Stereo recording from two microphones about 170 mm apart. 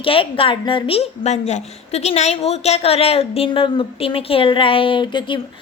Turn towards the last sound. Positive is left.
turn(degrees=25)  # may be behind; listen again after turning